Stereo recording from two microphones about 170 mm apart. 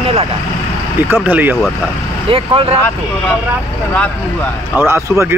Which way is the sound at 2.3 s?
30° right (ahead or behind).